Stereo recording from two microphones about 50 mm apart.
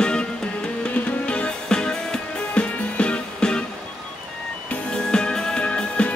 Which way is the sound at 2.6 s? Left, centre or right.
Left.